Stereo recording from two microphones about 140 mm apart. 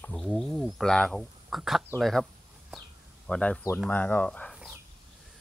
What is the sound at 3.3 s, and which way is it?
Speech, 5° left (ahead or behind).